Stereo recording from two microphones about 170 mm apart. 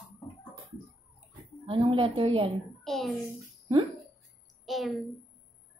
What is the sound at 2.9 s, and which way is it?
Speech, centre (ahead or behind).